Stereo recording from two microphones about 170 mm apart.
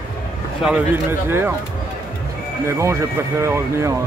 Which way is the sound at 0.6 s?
10° right (ahead or behind).